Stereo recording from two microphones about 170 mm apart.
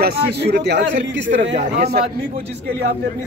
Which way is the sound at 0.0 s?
70° right (ahead or behind).